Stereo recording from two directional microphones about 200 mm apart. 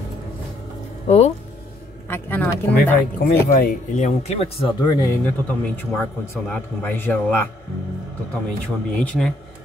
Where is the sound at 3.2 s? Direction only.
50° left (ahead or behind).